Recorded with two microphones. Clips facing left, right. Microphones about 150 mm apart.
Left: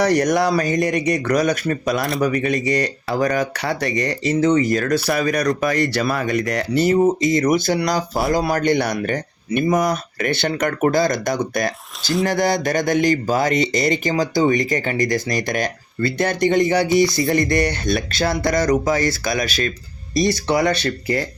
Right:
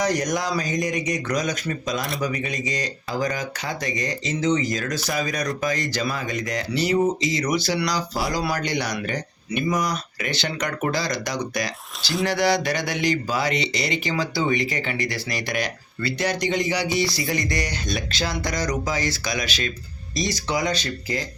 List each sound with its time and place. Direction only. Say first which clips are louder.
0.0 s speech: left 7 dB; 65° left (ahead or behind)